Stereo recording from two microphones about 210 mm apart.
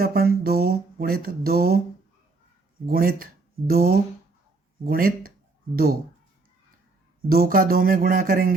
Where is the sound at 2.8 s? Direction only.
45° right (ahead or behind).